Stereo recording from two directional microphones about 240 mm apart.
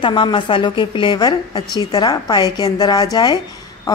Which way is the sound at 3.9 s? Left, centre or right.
Centre.